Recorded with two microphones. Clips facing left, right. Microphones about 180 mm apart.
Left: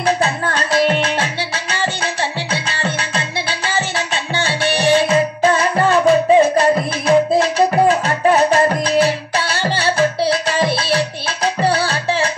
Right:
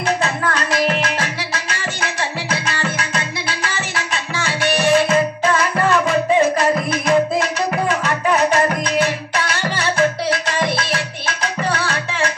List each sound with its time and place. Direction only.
0.0 s music: 30° left (ahead or behind)